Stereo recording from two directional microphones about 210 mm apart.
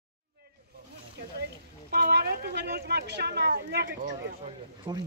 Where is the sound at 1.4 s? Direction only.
50° right (ahead or behind).